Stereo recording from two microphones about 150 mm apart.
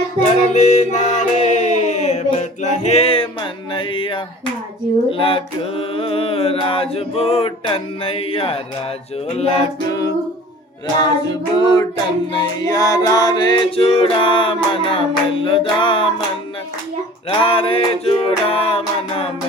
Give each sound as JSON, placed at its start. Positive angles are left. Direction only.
{"t": 0.2, "sound": "music", "side_deg": 55}
{"t": 9.9, "sound": "humming", "side_deg": 25}
{"t": 11.0, "sound": "child singing", "side_deg": 30}
{"t": 12.3, "sound": "music", "side_deg": 30}
{"t": 17.2, "sound": "music", "side_deg": 40}